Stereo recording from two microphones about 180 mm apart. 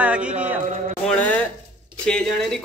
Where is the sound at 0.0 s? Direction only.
5° right (ahead or behind).